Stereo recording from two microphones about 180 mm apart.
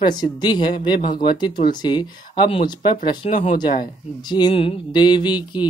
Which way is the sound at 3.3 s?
35° left (ahead or behind).